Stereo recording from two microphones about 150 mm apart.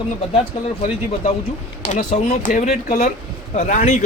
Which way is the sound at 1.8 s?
55° left (ahead or behind).